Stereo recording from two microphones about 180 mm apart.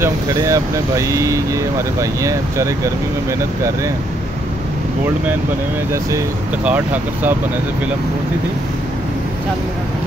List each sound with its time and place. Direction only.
0.0 s speech: 15° right (ahead or behind)
6.6 s speech: 10° right (ahead or behind)